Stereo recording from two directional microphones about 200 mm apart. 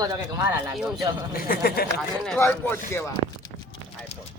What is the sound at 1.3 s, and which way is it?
Speech, 50° left (ahead or behind).